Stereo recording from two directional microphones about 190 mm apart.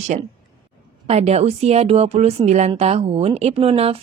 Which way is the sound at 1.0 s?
35° right (ahead or behind).